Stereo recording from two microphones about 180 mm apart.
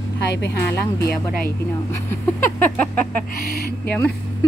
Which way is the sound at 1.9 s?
15° left (ahead or behind).